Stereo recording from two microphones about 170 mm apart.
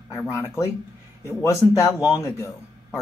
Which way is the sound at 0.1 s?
15° left (ahead or behind).